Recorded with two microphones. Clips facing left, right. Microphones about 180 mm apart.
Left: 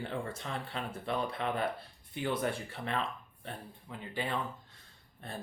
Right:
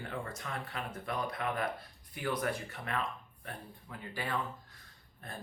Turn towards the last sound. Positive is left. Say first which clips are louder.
# left 3 dB
turn(degrees=30)  # may be behind; listen again after turning